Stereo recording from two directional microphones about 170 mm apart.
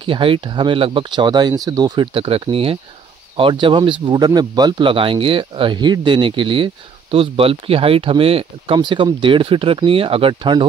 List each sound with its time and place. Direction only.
0.0 s speech: 30° right (ahead or behind)